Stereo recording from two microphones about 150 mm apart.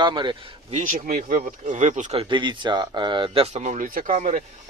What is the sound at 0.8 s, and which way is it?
Speech, 75° right (ahead or behind).